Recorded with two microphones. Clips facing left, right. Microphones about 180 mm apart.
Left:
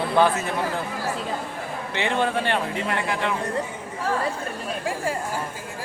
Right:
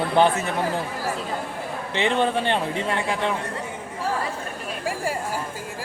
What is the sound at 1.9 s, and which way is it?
Speech, 20° right (ahead or behind).